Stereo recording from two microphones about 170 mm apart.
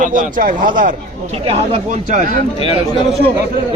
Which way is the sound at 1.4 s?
35° right (ahead or behind).